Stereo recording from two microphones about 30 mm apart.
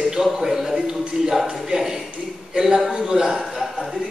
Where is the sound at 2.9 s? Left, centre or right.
Right.